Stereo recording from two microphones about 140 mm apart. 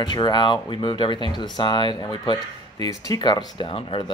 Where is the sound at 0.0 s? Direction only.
30° left (ahead or behind).